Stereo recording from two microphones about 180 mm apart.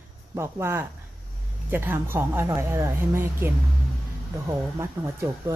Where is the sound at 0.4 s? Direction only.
15° right (ahead or behind).